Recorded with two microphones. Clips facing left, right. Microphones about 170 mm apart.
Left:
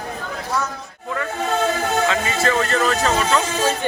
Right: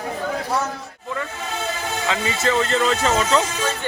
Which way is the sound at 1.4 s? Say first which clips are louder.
Left 7 dB; 50° left (ahead or behind).